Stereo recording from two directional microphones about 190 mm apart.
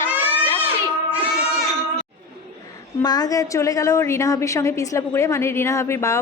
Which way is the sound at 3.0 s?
20° left (ahead or behind).